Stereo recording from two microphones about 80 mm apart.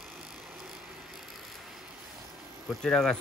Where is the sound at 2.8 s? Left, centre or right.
Centre.